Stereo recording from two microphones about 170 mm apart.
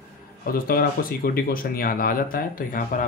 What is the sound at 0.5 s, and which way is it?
Speech, 60° left (ahead or behind).